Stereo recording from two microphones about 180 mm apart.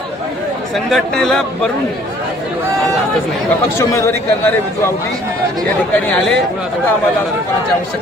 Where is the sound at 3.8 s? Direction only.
15° left (ahead or behind).